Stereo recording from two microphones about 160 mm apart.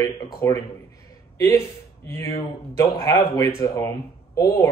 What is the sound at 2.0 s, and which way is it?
Speech, 15° left (ahead or behind).